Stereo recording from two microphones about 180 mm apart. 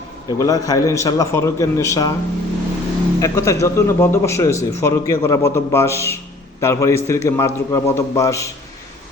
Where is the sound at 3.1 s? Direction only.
20° left (ahead or behind).